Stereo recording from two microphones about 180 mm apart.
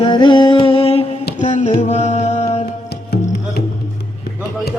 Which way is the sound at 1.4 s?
40° left (ahead or behind).